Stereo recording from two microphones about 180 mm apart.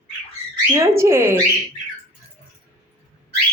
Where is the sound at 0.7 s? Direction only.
15° right (ahead or behind).